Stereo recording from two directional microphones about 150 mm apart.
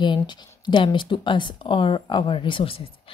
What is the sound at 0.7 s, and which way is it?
A woman's voice, 30° left (ahead or behind).